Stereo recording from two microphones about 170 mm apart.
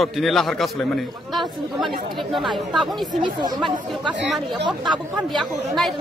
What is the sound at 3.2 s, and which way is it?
Speech, 25° right (ahead or behind).